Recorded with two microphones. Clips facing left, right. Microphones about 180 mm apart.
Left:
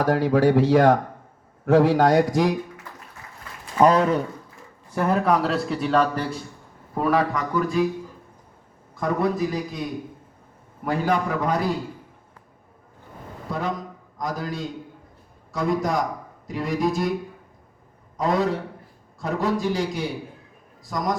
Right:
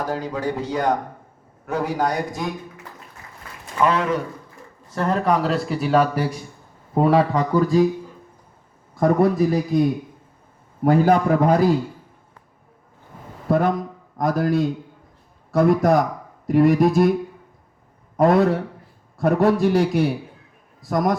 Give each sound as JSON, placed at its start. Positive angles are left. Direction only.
{"t": 0.0, "sound": "speech", "side_deg": 65}
{"t": 3.8, "sound": "speech", "side_deg": 35}
{"t": 4.9, "sound": "a man's voice", "side_deg": 10}
{"t": 6.9, "sound": "speech", "side_deg": -25}
{"t": 9.0, "sound": "a man's voice", "side_deg": -50}
{"t": 10.8, "sound": "a man's voice", "side_deg": -45}
{"t": 13.5, "sound": "a man's voice", "side_deg": -55}
{"t": 18.2, "sound": "a man's voice", "side_deg": -55}